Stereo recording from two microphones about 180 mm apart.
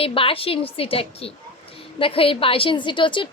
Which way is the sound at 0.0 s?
30° left (ahead or behind).